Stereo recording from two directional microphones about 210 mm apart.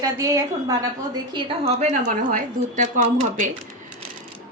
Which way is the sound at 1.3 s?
25° right (ahead or behind).